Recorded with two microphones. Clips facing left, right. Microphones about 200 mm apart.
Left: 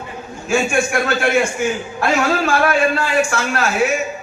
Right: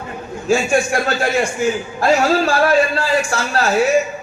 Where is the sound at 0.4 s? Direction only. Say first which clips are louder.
Right 2 dB; 35° right (ahead or behind).